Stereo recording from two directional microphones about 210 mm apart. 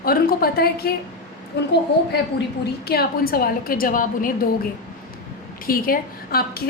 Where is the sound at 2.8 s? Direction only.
45° left (ahead or behind).